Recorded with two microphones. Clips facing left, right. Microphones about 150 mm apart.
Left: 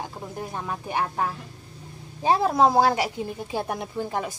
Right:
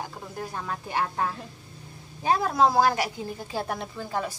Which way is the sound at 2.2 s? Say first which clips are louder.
Left 3 dB; 25° left (ahead or behind).